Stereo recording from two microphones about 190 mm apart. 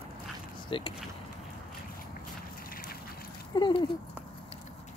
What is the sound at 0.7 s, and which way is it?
Speech, 25° left (ahead or behind).